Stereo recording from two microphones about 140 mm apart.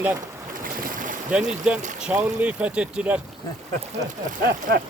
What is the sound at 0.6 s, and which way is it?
Boat, 80° right.